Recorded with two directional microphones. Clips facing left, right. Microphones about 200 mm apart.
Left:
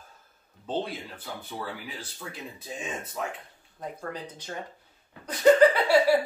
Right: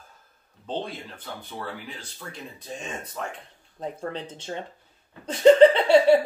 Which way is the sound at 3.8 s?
25° right (ahead or behind).